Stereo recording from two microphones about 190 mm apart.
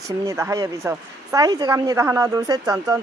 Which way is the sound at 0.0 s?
15° right (ahead or behind).